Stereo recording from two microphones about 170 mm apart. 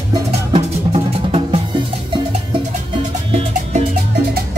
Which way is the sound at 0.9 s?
40° right (ahead or behind).